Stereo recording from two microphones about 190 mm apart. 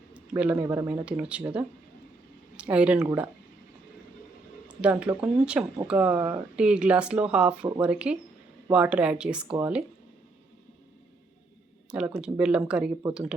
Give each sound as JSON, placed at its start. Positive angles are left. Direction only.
{"t": 0.1, "sound": "speech", "side_deg": -5}
{"t": 4.7, "sound": "speech", "side_deg": -5}
{"t": 11.9, "sound": "speech", "side_deg": -5}